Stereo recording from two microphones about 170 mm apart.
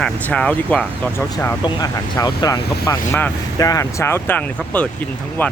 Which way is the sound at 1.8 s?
25° left (ahead or behind).